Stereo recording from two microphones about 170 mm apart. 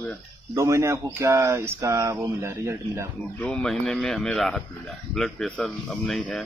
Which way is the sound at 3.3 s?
10° left (ahead or behind).